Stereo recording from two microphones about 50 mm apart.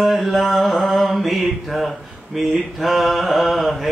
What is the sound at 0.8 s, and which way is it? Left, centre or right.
Mantra, centre.